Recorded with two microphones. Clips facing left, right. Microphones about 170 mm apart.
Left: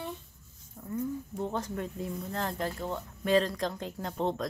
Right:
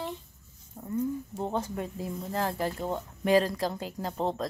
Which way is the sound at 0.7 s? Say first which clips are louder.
Right 3 dB; 20° right (ahead or behind).